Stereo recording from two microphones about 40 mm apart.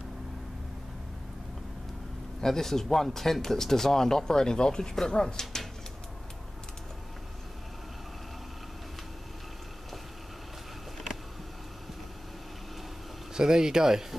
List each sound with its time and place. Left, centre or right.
2.4 s speech: centre
13.3 s speech: centre